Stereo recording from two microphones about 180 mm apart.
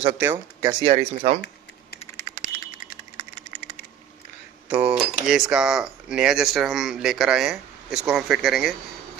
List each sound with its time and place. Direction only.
0.2 s speech: 15° right (ahead or behind); by 1.4 s 35° right (ahead or behind)
2.3 s typing: 15° right (ahead or behind)
4.7 s dishes: 5° right (ahead or behind)
5.3 s speech: 5° right (ahead or behind)